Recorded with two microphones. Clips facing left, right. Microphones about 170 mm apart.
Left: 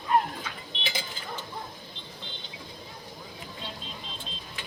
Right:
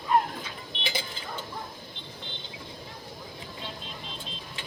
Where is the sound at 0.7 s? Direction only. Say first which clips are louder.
Right 2 dB; 60° right (ahead or behind).